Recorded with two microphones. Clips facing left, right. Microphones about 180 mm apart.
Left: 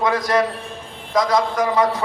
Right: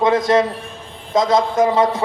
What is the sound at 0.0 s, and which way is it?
A man's voice, 25° right (ahead or behind).